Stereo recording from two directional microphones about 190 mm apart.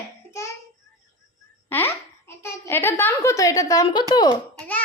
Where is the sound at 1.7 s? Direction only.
10° left (ahead or behind).